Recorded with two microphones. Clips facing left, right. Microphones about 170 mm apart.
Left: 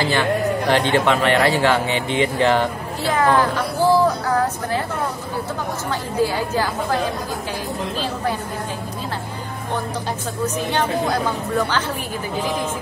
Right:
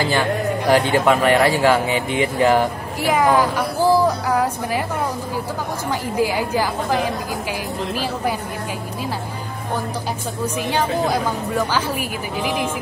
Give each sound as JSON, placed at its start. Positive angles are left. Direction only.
{"t": 0.1, "sound": "speech", "side_deg": -10}
{"t": 2.0, "sound": "speech", "side_deg": 25}
{"t": 2.5, "sound": "speech", "side_deg": -10}
{"t": 5.9, "sound": "speech", "side_deg": -10}
{"t": 10.4, "sound": "speech", "side_deg": -10}